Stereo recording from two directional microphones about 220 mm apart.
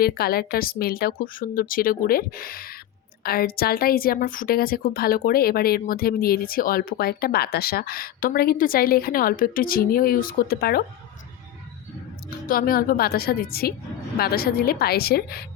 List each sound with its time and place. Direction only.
0.0 s a woman's voice: 45° left (ahead or behind)
12.5 s a woman's voice: 40° left (ahead or behind)